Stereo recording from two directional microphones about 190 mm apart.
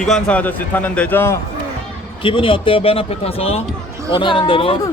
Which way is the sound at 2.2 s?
25° left (ahead or behind).